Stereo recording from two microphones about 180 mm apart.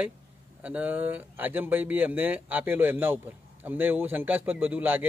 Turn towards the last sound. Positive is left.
turn(degrees=-10)  # may be behind; listen again after turning